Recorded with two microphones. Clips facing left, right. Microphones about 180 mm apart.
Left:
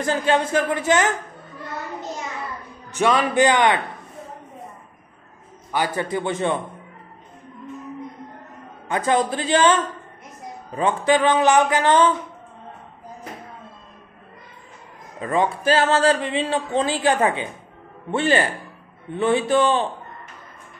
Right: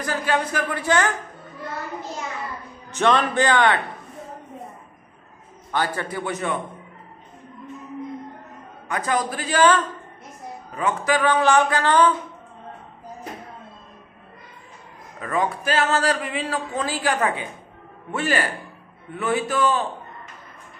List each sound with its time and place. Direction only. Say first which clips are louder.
0.0 s speech: left 4 dB; 25° left (ahead or behind)
2.9 s a man's voice: even; 10° left (ahead or behind)
5.7 s a man's voice: left 2 dB; 15° left (ahead or behind)
6.0 s speech: left 4 dB; 25° left (ahead or behind)
8.8 s speech: left 4 dB; 25° left (ahead or behind)
15.1 s speech: left 3 dB; 25° left (ahead or behind)